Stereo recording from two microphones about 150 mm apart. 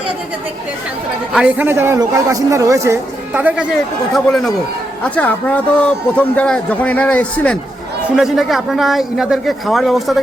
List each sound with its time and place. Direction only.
1.3 s a man's voice: 5° right (ahead or behind)
4.1 s a man's voice: centre (ahead or behind)